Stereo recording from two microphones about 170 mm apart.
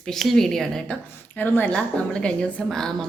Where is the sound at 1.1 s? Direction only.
10° left (ahead or behind).